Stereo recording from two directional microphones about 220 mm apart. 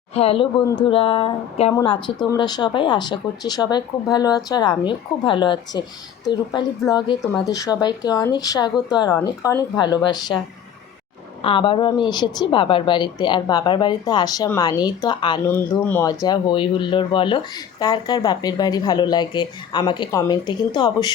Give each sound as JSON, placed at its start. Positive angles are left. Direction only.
{"t": 0.1, "sound": "speech", "side_deg": 25}
{"t": 6.9, "sound": "speech", "side_deg": 20}
{"t": 11.4, "sound": "speech", "side_deg": 25}